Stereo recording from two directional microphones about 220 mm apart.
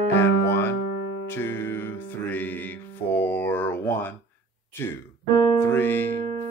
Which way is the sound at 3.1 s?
10° left (ahead or behind).